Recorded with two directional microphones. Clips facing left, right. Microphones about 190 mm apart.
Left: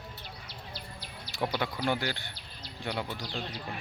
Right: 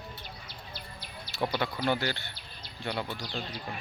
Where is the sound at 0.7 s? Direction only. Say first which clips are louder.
Right 1 dB; 35° left (ahead or behind).